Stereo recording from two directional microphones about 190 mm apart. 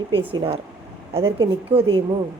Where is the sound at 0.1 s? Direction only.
30° right (ahead or behind).